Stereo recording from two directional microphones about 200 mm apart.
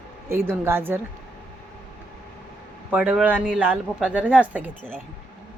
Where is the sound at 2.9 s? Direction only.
5° right (ahead or behind).